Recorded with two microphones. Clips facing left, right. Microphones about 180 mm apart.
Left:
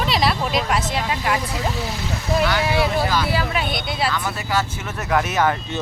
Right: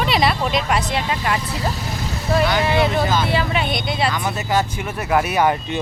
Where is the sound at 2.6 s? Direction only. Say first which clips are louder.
Right 2 dB; 10° left (ahead or behind).